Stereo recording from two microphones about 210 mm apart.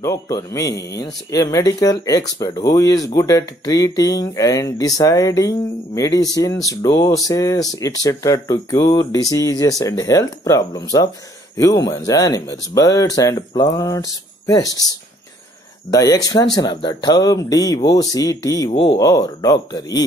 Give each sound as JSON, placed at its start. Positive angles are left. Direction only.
{"t": 0.0, "sound": "speech", "side_deg": 15}
{"t": 15.9, "sound": "speech", "side_deg": 15}
{"t": 18.7, "sound": "speech", "side_deg": 25}